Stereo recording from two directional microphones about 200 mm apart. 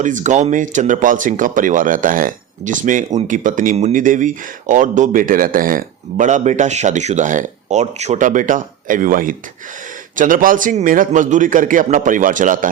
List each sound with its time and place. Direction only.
0.0 s speech: 40° right (ahead or behind)